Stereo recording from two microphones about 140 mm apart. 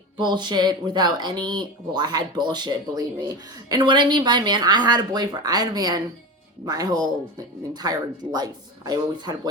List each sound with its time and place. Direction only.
0.2 s speech: 35° right (ahead or behind)